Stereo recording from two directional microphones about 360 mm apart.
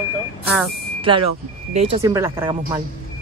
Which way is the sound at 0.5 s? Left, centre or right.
Centre.